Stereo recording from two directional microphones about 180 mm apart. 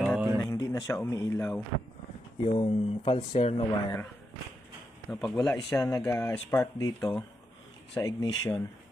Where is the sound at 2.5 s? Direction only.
30° left (ahead or behind).